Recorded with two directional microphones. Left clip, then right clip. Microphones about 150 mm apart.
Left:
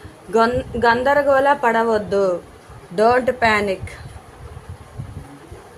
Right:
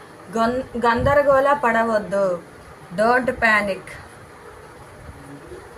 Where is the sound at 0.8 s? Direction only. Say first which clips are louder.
Left 1 dB; 60° left (ahead or behind).